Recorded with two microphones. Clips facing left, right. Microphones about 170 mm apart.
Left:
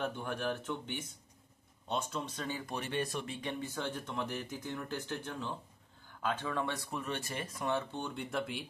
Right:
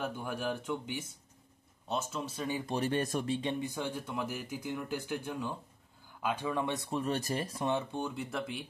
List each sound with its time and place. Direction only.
0.0 s speech: 10° right (ahead or behind)
2.7 s speech: 40° right (ahead or behind)
3.3 s speech: 25° right (ahead or behind)
7.6 s speech: 20° right (ahead or behind); by 8.6 s centre (ahead or behind)